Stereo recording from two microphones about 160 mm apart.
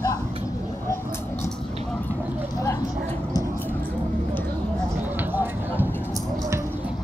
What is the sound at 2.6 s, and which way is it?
Speech, 20° left (ahead or behind).